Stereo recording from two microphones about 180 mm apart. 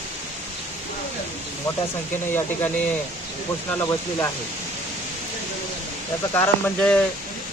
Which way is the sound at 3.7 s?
10° left (ahead or behind).